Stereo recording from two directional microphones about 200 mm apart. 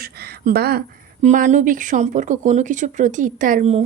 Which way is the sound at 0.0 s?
50° right (ahead or behind).